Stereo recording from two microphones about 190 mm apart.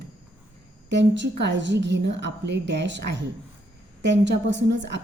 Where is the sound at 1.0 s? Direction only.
70° right (ahead or behind).